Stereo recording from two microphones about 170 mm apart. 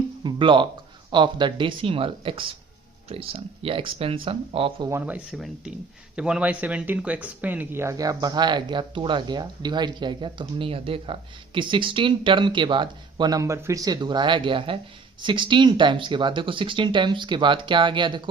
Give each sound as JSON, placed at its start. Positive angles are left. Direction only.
{"t": 0.2, "sound": "speech", "side_deg": -30}
{"t": 4.9, "sound": "speech", "side_deg": -10}